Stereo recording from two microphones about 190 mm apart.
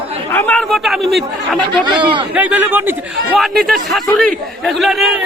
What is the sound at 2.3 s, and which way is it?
Speech, 10° right (ahead or behind).